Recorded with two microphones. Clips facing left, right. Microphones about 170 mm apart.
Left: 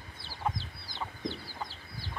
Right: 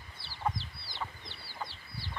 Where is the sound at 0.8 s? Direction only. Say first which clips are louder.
Left 5 dB; 45° left (ahead or behind).